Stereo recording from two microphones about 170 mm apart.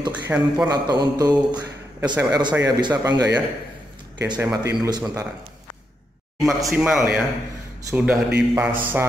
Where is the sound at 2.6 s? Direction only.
25° right (ahead or behind).